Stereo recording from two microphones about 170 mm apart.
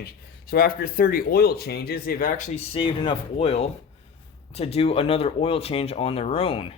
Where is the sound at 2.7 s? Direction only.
30° left (ahead or behind).